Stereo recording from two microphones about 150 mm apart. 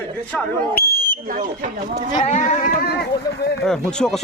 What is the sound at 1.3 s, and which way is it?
Speech, 60° right (ahead or behind).